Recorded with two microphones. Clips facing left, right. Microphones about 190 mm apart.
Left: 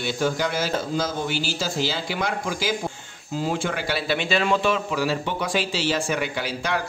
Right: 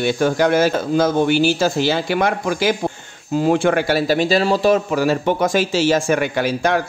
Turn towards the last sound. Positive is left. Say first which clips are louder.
# right 9 dB
turn(degrees=-50)  # may be behind; listen again after turning